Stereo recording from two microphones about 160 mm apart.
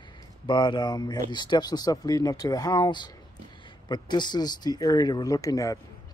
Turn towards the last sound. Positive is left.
turn(degrees=20)  # may be behind; listen again after turning